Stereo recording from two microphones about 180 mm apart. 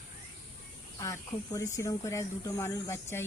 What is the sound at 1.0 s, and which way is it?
Speech, 15° left (ahead or behind).